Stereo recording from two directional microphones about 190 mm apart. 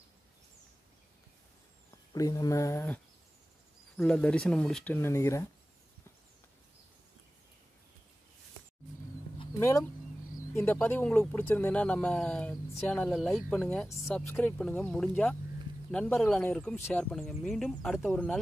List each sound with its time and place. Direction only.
2.1 s speech: 20° left (ahead or behind)
9.6 s speech: 15° left (ahead or behind)